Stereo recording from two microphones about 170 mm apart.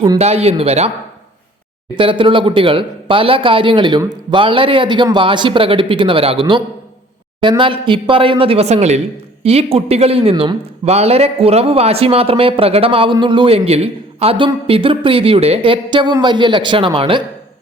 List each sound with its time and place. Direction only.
0.2 s speech: 40° right (ahead or behind)
2.0 s speech: 30° right (ahead or behind)